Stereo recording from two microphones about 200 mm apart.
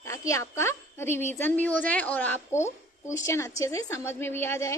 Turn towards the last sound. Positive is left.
turn(degrees=10)  # may be behind; listen again after turning